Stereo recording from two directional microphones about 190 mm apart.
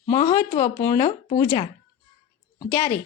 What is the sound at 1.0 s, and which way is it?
Speech, 40° left (ahead or behind).